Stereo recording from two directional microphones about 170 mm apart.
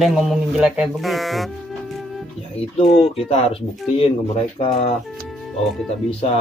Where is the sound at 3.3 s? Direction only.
35° left (ahead or behind).